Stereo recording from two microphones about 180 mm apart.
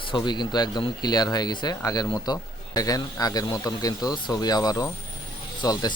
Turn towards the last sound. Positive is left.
turn(degrees=20)  # may be behind; listen again after turning